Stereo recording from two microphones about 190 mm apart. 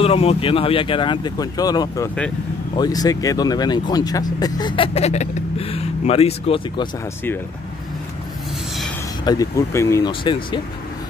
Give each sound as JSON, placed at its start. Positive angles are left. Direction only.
{"t": 0.0, "sound": "speech", "side_deg": 30}
{"t": 9.2, "sound": "speech", "side_deg": 20}